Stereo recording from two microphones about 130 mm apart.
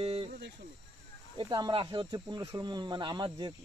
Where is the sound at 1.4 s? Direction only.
40° right (ahead or behind).